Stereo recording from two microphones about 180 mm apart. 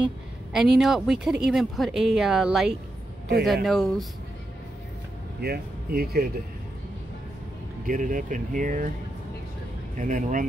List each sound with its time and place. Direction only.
0.0 s speech: centre (ahead or behind)
5.4 s speech: 60° right (ahead or behind)
7.8 s speech: 45° right (ahead or behind)
9.9 s speech: 45° right (ahead or behind)